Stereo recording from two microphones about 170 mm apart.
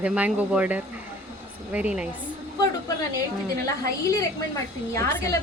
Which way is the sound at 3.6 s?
20° left (ahead or behind).